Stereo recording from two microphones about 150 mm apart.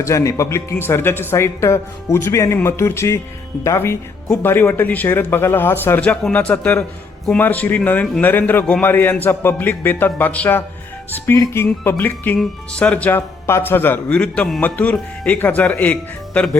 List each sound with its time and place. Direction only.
0.0 s speech: 20° left (ahead or behind)